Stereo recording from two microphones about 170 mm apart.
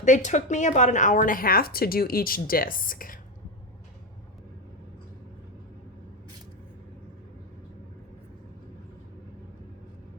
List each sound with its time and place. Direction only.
0.0 s a woman's voice: 45° left (ahead or behind)